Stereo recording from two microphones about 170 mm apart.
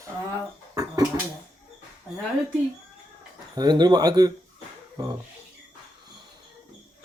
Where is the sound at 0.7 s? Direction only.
20° right (ahead or behind).